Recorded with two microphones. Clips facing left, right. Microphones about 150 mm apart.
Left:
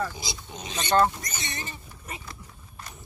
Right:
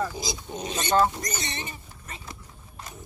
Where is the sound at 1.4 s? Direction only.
20° right (ahead or behind).